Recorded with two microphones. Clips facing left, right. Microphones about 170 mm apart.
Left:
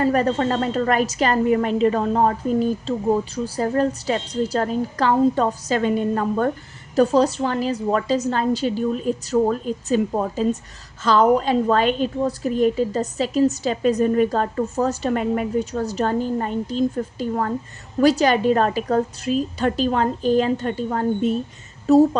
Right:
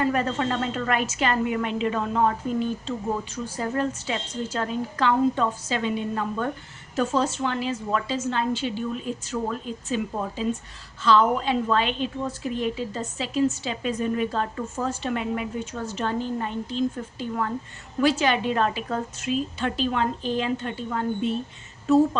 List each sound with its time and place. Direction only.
0.0 s a woman's voice: 40° left (ahead or behind)